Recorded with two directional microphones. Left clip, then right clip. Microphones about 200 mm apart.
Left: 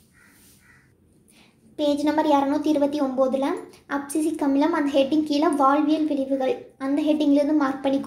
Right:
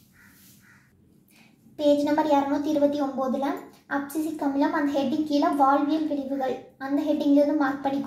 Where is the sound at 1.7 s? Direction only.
20° left (ahead or behind).